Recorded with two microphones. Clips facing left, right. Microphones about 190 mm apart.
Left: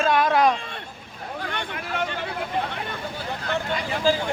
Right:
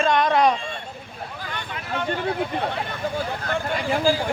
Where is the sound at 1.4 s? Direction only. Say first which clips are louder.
Left 4 dB; 65° left (ahead or behind).